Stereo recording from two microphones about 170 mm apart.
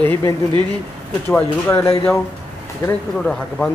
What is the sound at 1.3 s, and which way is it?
Speech, 15° left (ahead or behind).